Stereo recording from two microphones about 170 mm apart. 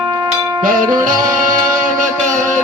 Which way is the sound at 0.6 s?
50° right (ahead or behind).